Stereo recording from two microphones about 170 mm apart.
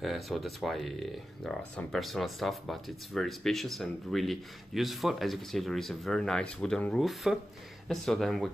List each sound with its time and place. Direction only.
0.0 s speech: centre (ahead or behind)